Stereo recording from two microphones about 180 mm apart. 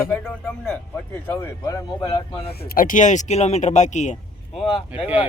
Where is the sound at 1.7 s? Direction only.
20° left (ahead or behind).